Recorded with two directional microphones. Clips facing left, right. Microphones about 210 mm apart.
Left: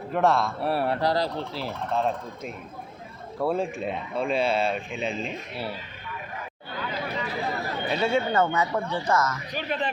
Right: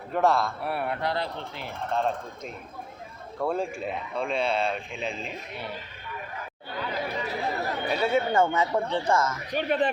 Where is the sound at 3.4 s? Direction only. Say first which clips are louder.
Left 2 dB; 5° left (ahead or behind).